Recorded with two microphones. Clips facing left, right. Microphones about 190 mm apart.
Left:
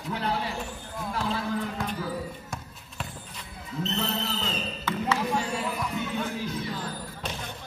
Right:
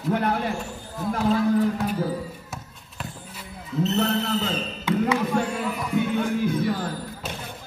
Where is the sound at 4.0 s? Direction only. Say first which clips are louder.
Right 7 dB; 60° right (ahead or behind).